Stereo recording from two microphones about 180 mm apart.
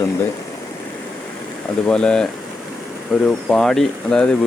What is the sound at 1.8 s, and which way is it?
Speech, 5° left (ahead or behind).